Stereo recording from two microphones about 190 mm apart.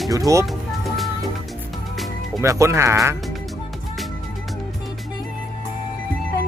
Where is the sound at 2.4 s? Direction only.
15° right (ahead or behind).